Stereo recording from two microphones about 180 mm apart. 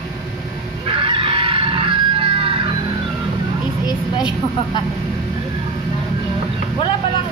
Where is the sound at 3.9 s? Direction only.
25° left (ahead or behind).